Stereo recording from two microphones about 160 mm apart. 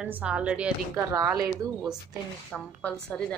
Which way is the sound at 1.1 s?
20° right (ahead or behind).